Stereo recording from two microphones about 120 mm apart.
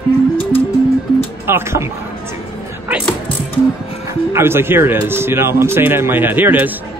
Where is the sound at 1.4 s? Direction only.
20° right (ahead or behind).